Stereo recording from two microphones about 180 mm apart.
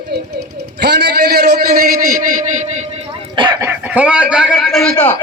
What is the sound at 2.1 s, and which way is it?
Speech, 45° right (ahead or behind).